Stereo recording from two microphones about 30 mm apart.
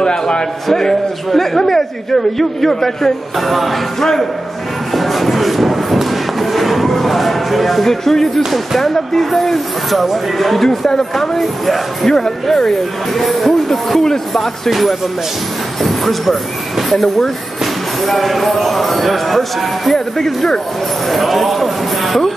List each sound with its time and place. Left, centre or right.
0.0 s a sound: left
0.7 s a man's voice: centre
3.3 s speech: centre
4.0 s a man's voice: centre
4.9 s music: centre
6.9 s a sound: centre
8.5 s a man's voice: centre
10.9 s a man's voice: centre
11.3 s speech: centre
12.1 s a man's voice: centre
14.7 s a man's voice: centre
21.1 s speech: centre